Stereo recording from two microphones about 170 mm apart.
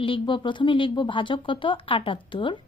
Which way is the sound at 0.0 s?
30° left (ahead or behind).